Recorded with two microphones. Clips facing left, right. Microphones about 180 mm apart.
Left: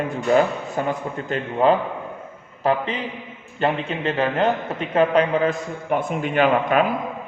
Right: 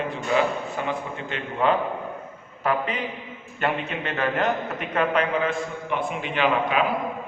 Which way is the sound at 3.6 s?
30° left (ahead or behind).